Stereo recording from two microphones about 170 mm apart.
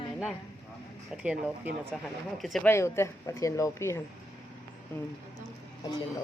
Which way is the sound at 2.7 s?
15° left (ahead or behind).